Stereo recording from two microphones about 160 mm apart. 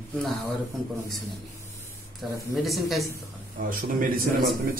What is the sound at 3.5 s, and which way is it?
Speech, 60° right (ahead or behind).